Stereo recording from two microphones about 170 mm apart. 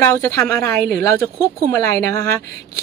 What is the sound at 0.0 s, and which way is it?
A woman's voice, 15° left (ahead or behind).